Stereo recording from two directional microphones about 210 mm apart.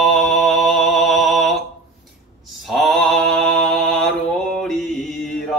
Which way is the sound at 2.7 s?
Centre (ahead or behind).